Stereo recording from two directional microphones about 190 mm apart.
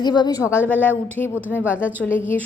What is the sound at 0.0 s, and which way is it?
Speech, 20° left (ahead or behind).